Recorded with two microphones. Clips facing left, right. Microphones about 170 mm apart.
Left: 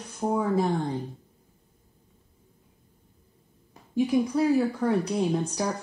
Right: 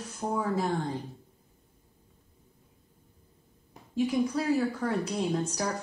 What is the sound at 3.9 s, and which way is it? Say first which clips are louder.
A woman's voice: left 3 dB; 20° left (ahead or behind).